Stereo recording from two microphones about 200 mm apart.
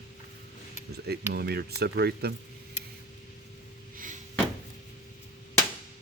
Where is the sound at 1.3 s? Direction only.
55° right (ahead or behind).